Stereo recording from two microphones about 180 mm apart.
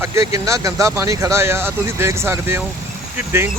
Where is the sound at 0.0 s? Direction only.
15° right (ahead or behind).